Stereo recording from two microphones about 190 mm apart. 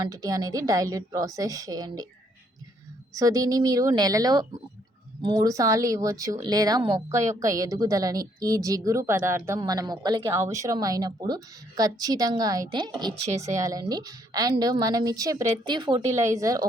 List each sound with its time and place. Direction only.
0.0 s speech: 20° right (ahead or behind)
3.2 s speech: 20° right (ahead or behind)